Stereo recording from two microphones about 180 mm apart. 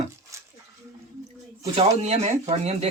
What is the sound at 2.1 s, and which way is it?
Speech, 35° right (ahead or behind).